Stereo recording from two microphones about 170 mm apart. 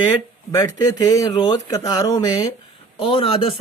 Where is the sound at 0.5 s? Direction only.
25° left (ahead or behind).